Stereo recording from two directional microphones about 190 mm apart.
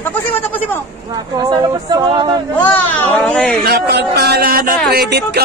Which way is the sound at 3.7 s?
60° right (ahead or behind).